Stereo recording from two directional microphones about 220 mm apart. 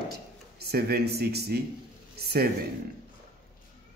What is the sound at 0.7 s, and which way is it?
Speech, 45° right (ahead or behind).